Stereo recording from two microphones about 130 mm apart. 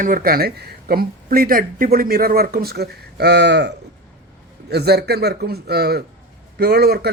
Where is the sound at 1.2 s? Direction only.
90° right.